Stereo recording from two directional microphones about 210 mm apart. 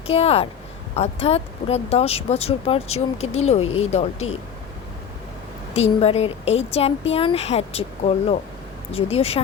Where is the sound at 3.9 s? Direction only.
30° left (ahead or behind).